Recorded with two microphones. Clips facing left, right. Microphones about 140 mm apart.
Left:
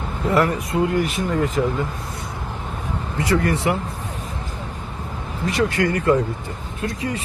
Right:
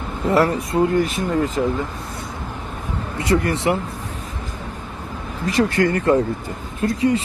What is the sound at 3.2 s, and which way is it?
Speech, 25° right (ahead or behind).